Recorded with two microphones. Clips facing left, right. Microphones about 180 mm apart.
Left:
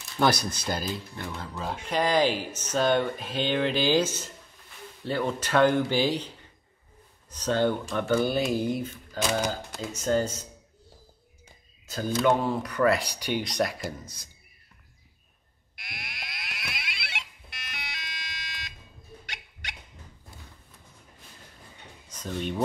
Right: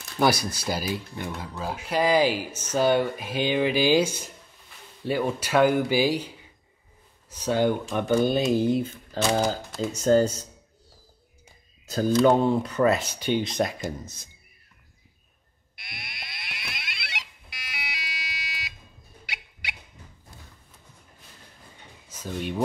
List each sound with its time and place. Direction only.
0.2 s speech: 10° right (ahead or behind); by 9.2 s 25° right (ahead or behind)
9.9 s speech: 35° right (ahead or behind)
12.3 s speech: 25° right (ahead or behind)
15.7 s frog: centre (ahead or behind)
19.2 s rodents: 10° right (ahead or behind)
22.1 s speech: 5° right (ahead or behind)